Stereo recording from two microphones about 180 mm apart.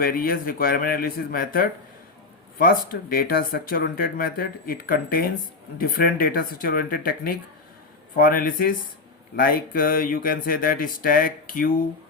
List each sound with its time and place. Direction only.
0.0 s speech: 55° left (ahead or behind)